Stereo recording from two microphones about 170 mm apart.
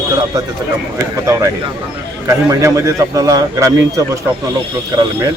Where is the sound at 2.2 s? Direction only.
15° right (ahead or behind).